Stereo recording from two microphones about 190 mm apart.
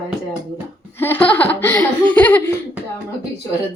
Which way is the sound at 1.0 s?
10° left (ahead or behind).